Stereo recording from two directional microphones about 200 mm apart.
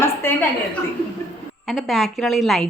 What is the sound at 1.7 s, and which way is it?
Speech, centre (ahead or behind).